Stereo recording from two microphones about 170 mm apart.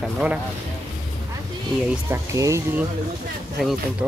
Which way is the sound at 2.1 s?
20° right (ahead or behind).